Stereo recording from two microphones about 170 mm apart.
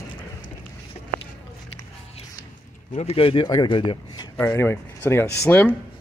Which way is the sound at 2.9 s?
35° left (ahead or behind).